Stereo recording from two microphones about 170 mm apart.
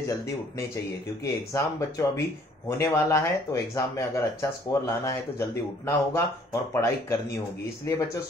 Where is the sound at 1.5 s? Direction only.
15° left (ahead or behind).